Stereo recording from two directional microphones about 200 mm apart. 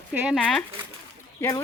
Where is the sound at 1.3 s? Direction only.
15° left (ahead or behind).